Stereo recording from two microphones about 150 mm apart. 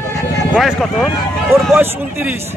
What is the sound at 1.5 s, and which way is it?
Speech, 15° right (ahead or behind).